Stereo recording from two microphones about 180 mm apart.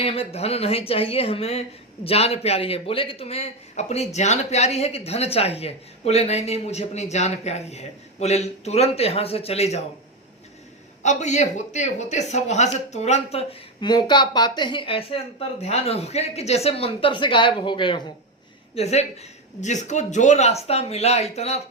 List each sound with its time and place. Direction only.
0.0 s a man's voice: 35° left (ahead or behind)
11.0 s a man's voice: 40° left (ahead or behind)
18.7 s a man's voice: 35° left (ahead or behind)